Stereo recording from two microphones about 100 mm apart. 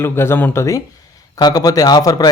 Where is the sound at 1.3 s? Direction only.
40° left (ahead or behind).